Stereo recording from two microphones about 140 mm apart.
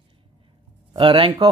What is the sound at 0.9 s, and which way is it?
Speech, 40° right (ahead or behind).